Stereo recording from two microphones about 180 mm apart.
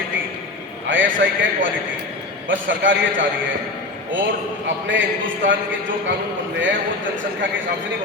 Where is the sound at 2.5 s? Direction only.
90° right.